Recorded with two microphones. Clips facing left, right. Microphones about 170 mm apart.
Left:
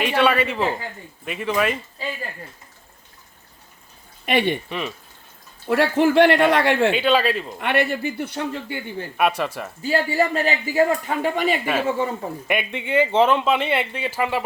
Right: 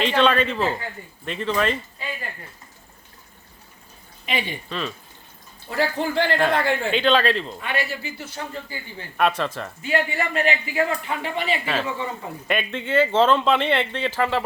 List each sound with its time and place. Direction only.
0.0 s speech: 10° left (ahead or behind)
4.3 s speech: 60° left (ahead or behind)
5.6 s speech: 70° left (ahead or behind)
6.9 s speech: 10° left (ahead or behind)
7.6 s speech: 65° left (ahead or behind)
9.1 s speech: 10° left (ahead or behind)
9.8 s speech: 35° left (ahead or behind)
11.6 s speech: 10° left (ahead or behind)